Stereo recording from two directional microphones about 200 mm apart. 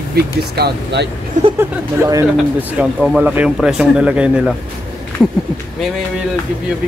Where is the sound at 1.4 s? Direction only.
35° right (ahead or behind).